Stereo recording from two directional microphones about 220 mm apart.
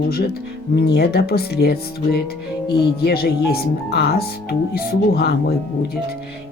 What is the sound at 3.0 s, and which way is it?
Speech, 45° left (ahead or behind).